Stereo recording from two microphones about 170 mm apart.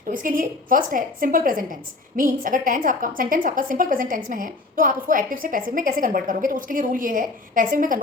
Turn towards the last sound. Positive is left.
turn(degrees=-50)  # may be behind; listen again after turning